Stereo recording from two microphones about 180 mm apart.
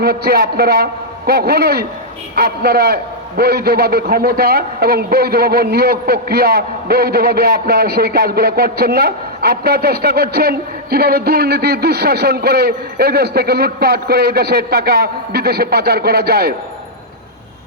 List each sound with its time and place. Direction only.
0.0 s a man's voice: 60° right (ahead or behind)